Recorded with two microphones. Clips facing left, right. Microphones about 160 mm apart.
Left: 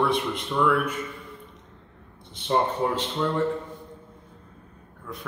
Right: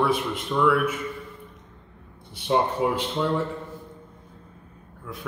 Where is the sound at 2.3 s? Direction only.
10° right (ahead or behind).